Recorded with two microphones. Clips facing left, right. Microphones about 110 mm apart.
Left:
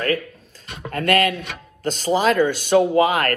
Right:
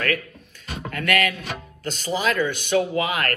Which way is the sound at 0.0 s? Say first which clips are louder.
Left 3 dB; 30° left (ahead or behind).